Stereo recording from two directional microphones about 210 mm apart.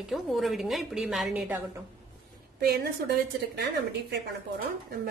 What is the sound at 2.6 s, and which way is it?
Speech, 50° right (ahead or behind).